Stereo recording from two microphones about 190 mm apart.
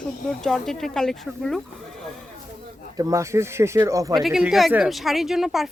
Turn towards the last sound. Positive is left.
turn(degrees=0)  # may be behind; listen again after turning